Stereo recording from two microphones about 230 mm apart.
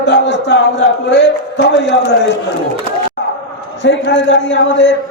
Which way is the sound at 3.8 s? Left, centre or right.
Left.